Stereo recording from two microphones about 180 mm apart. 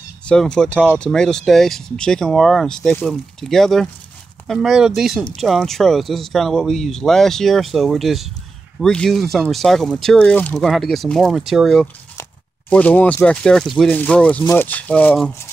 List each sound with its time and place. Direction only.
0.2 s speech: 5° left (ahead or behind)